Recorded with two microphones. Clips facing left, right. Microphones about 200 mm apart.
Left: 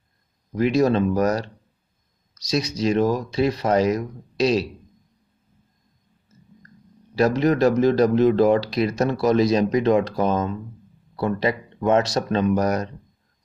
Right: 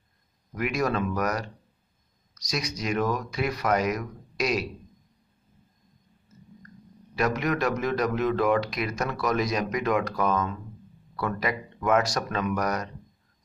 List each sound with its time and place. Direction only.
0.6 s speech: 30° left (ahead or behind)
7.2 s speech: 30° left (ahead or behind)